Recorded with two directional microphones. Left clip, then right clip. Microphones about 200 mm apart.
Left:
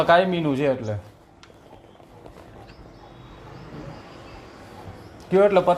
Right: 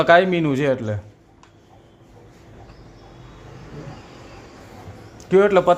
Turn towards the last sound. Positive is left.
turn(degrees=-45)  # may be behind; listen again after turning